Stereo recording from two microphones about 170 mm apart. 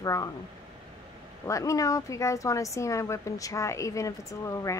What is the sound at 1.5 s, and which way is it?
Speech, 20° left (ahead or behind).